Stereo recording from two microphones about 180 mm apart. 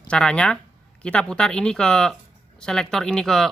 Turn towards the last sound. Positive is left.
turn(degrees=0)  # may be behind; listen again after turning